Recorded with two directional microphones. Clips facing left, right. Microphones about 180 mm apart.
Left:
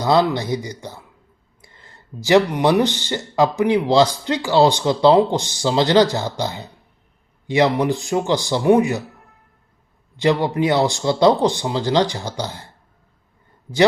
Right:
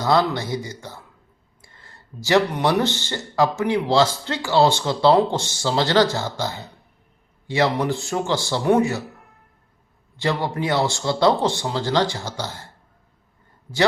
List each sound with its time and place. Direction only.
0.0 s speech: 15° left (ahead or behind)
10.2 s speech: 15° left (ahead or behind)